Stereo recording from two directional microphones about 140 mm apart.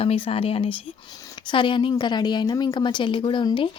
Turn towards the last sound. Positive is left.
turn(degrees=35)  # may be behind; listen again after turning